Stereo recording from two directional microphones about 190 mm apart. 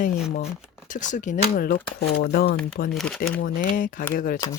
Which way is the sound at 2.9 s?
Centre (ahead or behind).